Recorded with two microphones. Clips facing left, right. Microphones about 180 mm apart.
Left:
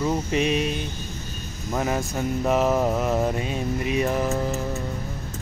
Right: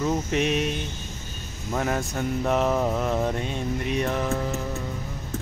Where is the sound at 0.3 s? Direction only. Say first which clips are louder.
Left 1 dB; centre (ahead or behind).